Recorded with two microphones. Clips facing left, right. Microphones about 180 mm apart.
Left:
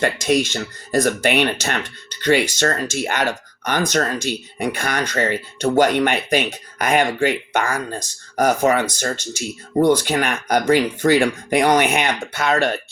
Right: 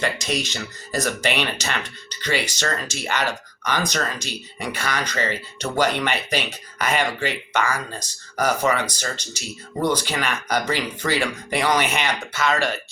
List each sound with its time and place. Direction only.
0.0 s speech: 55° left (ahead or behind)